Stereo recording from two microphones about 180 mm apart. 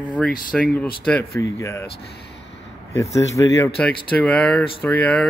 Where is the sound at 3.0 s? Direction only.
15° left (ahead or behind).